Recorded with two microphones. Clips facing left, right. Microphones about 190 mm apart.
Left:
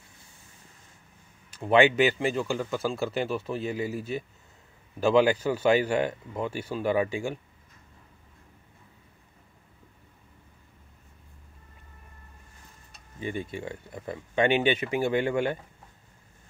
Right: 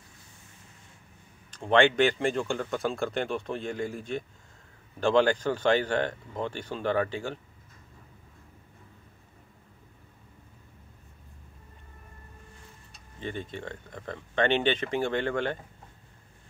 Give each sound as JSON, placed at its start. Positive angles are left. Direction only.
{"t": 1.5, "sound": "speech", "side_deg": 10}
{"t": 13.2, "sound": "speech", "side_deg": 10}